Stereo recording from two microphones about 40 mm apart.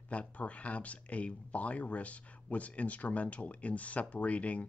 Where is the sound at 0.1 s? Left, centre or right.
Left.